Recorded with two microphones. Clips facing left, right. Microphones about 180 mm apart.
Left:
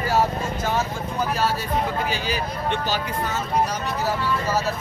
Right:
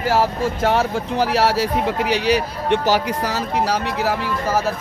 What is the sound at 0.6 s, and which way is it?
Speech, 75° right (ahead or behind).